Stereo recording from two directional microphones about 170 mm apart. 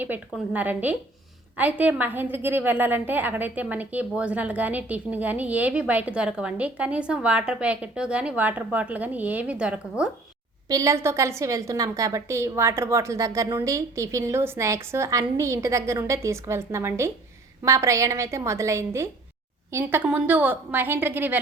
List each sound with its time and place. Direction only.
0.0 s a woman's voice: 10° right (ahead or behind)
10.7 s a woman's voice: 20° right (ahead or behind)